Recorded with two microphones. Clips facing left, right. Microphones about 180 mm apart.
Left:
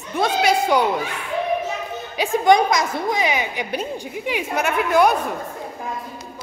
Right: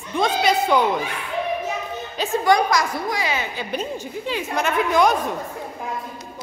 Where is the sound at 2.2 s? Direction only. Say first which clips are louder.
Left 3 dB; 20° left (ahead or behind).